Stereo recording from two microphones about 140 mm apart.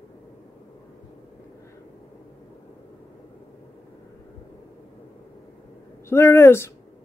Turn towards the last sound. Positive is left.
turn(degrees=20)  # may be behind; listen again after turning